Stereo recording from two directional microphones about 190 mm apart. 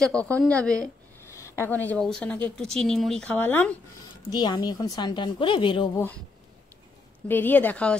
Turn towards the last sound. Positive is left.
turn(degrees=5)  # may be behind; listen again after turning